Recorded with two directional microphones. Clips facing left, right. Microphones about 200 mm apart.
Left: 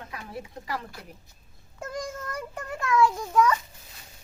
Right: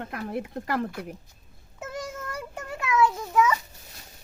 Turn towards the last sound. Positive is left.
turn(degrees=-5)  # may be behind; listen again after turning